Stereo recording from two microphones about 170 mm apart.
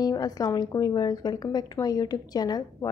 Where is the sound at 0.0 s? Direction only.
20° left (ahead or behind).